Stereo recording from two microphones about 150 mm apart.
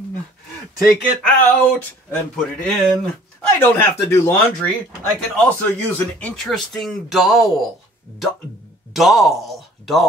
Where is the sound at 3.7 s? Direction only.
20° left (ahead or behind).